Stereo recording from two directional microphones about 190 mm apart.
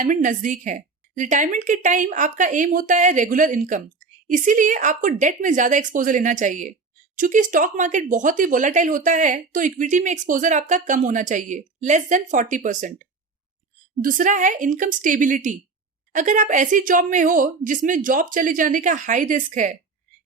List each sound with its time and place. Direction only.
0.0 s speech: 45° right (ahead or behind)